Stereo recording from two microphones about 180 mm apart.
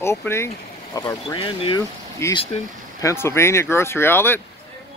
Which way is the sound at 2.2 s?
15° left (ahead or behind).